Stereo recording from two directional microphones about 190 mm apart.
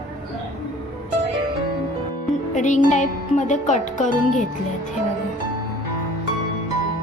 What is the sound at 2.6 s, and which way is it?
Speech, 40° left (ahead or behind).